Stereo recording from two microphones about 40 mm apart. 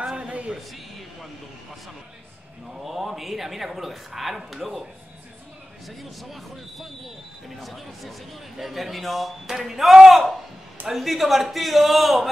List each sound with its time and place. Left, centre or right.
0.1 s a sound: right
2.8 s speech: centre
5.9 s speech: centre